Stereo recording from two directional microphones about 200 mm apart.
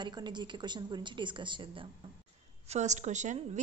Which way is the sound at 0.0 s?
20° right (ahead or behind).